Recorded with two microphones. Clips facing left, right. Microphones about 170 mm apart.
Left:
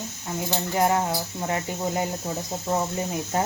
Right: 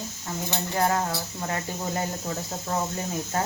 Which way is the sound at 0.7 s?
20° left (ahead or behind).